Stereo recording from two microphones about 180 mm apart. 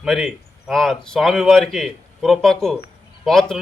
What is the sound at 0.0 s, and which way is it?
Speech, centre (ahead or behind).